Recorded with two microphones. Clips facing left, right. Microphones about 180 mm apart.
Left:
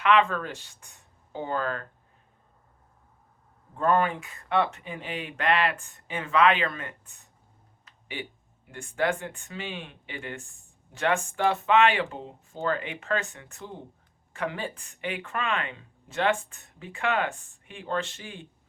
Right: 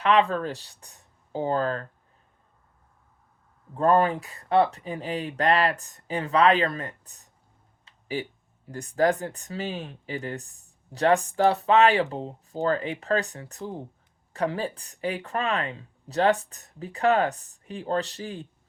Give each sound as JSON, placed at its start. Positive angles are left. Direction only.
{"t": 0.0, "sound": "speech", "side_deg": -35}
{"t": 3.8, "sound": "speech", "side_deg": -35}